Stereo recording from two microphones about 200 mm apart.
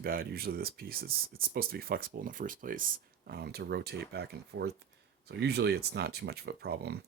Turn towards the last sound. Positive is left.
turn(degrees=-55)  # may be behind; listen again after turning